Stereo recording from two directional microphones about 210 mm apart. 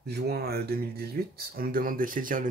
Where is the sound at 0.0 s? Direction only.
50° right (ahead or behind).